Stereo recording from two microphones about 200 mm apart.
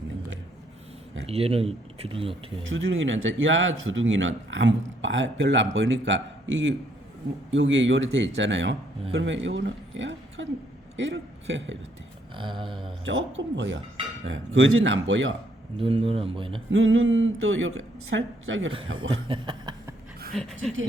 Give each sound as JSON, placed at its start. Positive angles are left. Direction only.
{"t": 1.3, "sound": "speech", "side_deg": -30}
{"t": 2.6, "sound": "a man's voice", "side_deg": -75}
{"t": 12.4, "sound": "speech", "side_deg": -25}
{"t": 13.1, "sound": "a man's voice", "side_deg": -70}
{"t": 15.8, "sound": "speech", "side_deg": -25}
{"t": 16.6, "sound": "a man's voice", "side_deg": -75}
{"t": 19.3, "sound": "speech", "side_deg": -20}
{"t": 20.3, "sound": "pant", "side_deg": 5}